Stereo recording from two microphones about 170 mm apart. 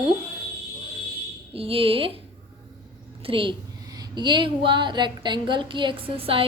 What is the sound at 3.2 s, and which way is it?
A woman's voice, 30° right (ahead or behind).